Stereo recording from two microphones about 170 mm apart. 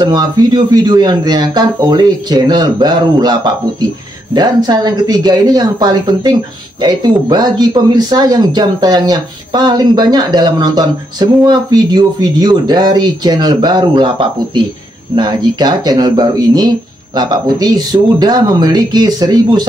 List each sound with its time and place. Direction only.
0.0 s speech: 20° right (ahead or behind)